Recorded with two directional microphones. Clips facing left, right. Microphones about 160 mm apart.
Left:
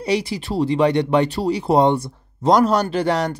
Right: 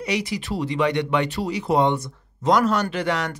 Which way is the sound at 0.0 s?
30° left (ahead or behind).